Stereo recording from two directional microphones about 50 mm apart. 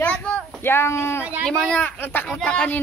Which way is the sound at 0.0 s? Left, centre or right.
Left.